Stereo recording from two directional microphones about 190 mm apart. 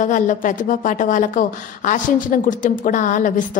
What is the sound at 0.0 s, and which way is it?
Speech, 40° left (ahead or behind).